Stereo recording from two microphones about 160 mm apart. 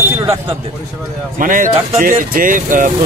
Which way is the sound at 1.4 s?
55° right (ahead or behind).